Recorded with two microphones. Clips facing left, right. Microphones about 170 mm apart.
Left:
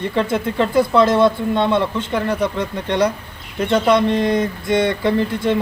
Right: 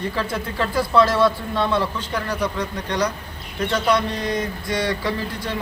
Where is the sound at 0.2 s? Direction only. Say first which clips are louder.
Left 9 dB; 20° left (ahead or behind).